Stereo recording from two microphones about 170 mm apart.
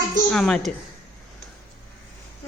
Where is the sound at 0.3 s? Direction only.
5° left (ahead or behind).